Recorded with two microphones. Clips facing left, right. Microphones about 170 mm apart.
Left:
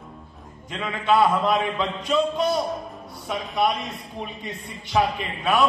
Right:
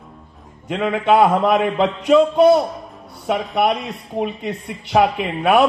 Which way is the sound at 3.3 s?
70° right (ahead or behind).